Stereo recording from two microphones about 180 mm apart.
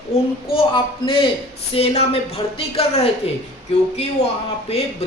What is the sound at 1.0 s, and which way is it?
A man's voice, 30° left (ahead or behind).